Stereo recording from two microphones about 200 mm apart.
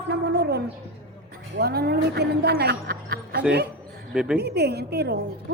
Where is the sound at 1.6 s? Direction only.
55° right (ahead or behind).